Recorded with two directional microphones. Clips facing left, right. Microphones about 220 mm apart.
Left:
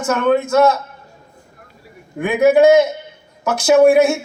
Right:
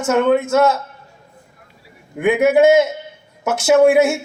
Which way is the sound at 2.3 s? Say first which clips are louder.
Left 1 dB; 25° right (ahead or behind).